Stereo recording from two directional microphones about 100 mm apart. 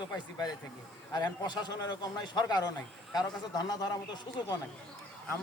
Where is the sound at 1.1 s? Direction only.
45° left (ahead or behind).